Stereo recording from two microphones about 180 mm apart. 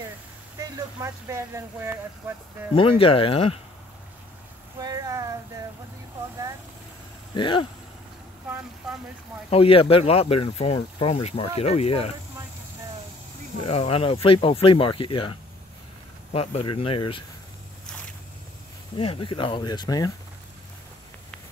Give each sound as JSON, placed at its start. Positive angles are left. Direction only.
{"t": 0.6, "sound": "speech", "side_deg": -15}
{"t": 2.7, "sound": "speech", "side_deg": 30}
{"t": 4.7, "sound": "a sound", "side_deg": -20}
{"t": 7.3, "sound": "speech", "side_deg": 25}
{"t": 9.5, "sound": "speech", "side_deg": 30}
{"t": 13.7, "sound": "speech", "side_deg": 35}
{"t": 16.3, "sound": "speech", "side_deg": 30}
{"t": 18.9, "sound": "speech", "side_deg": 30}